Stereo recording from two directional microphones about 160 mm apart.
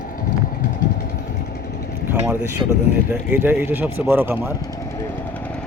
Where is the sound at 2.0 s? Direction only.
15° right (ahead or behind).